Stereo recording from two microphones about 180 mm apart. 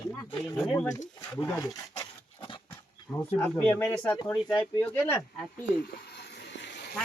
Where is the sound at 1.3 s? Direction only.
15° left (ahead or behind).